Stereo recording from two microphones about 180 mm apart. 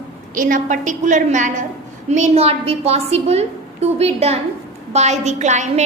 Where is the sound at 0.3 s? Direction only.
50° right (ahead or behind).